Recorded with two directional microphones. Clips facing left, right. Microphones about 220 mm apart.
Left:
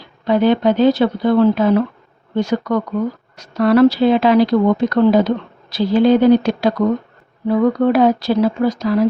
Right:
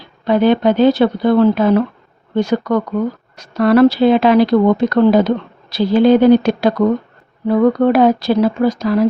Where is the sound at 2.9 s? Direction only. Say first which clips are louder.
Right 2 dB; 55° right (ahead or behind).